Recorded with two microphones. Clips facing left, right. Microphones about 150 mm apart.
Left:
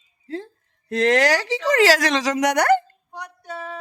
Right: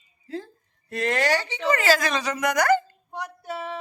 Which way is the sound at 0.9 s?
90° left.